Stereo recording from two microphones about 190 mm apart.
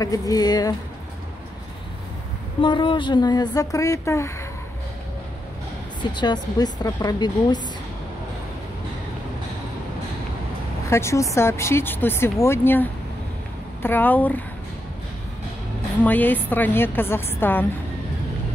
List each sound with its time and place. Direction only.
0.0 s speech: 20° left (ahead or behind)
2.6 s speech: 25° left (ahead or behind)
6.1 s speech: 20° left (ahead or behind)
10.9 s speech: 15° left (ahead or behind)
13.8 s speech: 10° left (ahead or behind)
16.0 s speech: 10° left (ahead or behind)